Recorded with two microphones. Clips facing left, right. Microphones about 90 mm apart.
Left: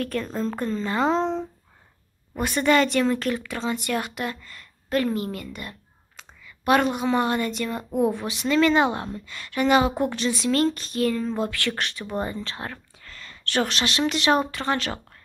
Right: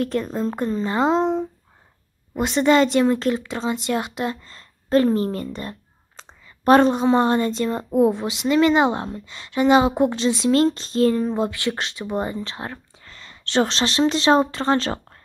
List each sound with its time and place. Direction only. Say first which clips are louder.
0.0 s speech: right 4 dB; 25° right (ahead or behind)